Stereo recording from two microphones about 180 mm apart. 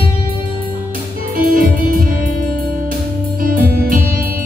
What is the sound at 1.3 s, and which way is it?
Music, 50° right (ahead or behind).